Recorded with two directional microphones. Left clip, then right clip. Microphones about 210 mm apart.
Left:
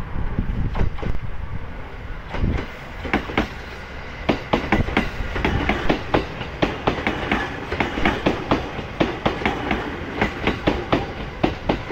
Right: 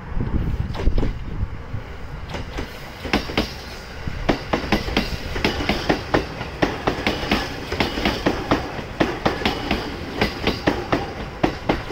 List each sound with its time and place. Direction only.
3.1 s vehicle: 50° right (ahead or behind)
4.3 s train: 50° right (ahead or behind)
11.4 s train: 35° right (ahead or behind)